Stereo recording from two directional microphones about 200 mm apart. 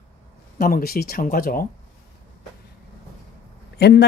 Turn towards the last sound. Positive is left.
turn(degrees=55)  # may be behind; listen again after turning